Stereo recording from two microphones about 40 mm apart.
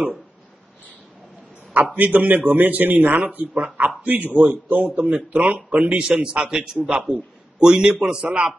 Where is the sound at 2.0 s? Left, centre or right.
Right.